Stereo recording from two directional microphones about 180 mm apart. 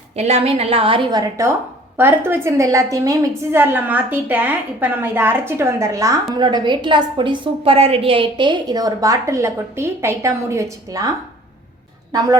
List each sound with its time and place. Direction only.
0.2 s a woman's voice: 35° right (ahead or behind); by 11.1 s 20° right (ahead or behind)